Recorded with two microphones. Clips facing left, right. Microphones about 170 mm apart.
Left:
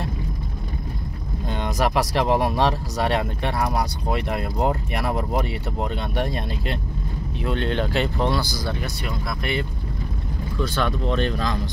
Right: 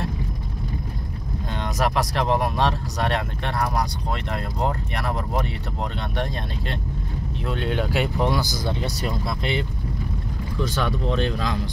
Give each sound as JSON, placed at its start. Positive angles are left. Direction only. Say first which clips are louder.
{"t": 1.8, "sound": "speech", "louder": "left 2 dB", "side_deg": 5}
{"t": 7.4, "sound": "speech", "louder": "left 2 dB", "side_deg": -5}
{"t": 8.8, "sound": "speech", "louder": "right 3 dB", "side_deg": -35}
{"t": 9.4, "sound": "speech", "louder": "even", "side_deg": -20}